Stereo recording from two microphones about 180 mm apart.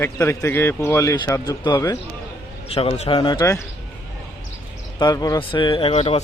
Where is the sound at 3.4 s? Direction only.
15° left (ahead or behind).